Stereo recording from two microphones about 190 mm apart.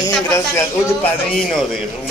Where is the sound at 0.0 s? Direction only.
15° left (ahead or behind).